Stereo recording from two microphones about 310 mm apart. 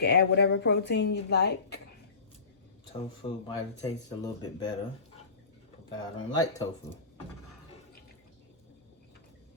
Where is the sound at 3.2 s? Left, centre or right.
Centre.